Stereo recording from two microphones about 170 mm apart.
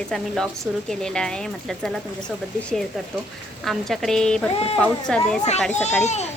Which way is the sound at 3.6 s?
Centre (ahead or behind).